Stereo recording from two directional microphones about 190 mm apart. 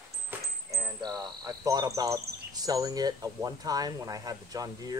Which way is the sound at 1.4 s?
20° right (ahead or behind).